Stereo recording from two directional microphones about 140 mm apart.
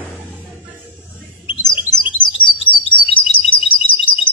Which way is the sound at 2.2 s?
35° left (ahead or behind).